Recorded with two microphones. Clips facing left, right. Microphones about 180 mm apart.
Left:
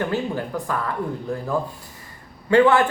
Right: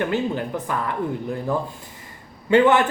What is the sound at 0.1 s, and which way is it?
Speech, 20° right (ahead or behind).